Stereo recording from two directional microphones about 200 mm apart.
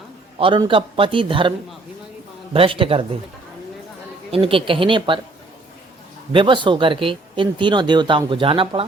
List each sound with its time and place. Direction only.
0.3 s speech: 25° right (ahead or behind)
4.3 s speech: 25° right (ahead or behind)
6.3 s speech: 25° right (ahead or behind)